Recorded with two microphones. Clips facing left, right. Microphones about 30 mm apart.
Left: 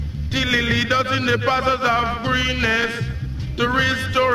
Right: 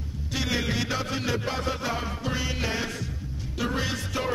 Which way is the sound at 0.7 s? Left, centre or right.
Left.